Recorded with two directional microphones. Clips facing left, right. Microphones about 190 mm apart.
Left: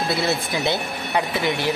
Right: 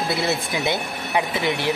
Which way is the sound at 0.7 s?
20° right (ahead or behind).